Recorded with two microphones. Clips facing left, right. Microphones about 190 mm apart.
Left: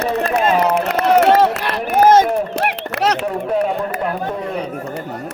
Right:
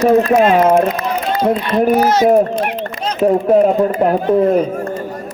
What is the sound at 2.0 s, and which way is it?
Speech, 50° left (ahead or behind).